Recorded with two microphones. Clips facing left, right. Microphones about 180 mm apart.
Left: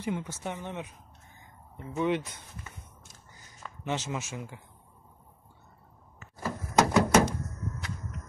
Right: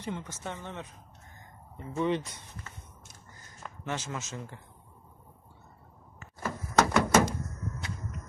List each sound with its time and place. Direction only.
0.0 s speech: 10° left (ahead or behind)
2.0 s speech: 5° left (ahead or behind)
3.8 s speech: 15° left (ahead or behind)
6.4 s door: 15° left (ahead or behind)